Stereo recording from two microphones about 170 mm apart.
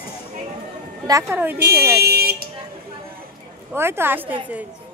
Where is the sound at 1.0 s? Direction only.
15° right (ahead or behind).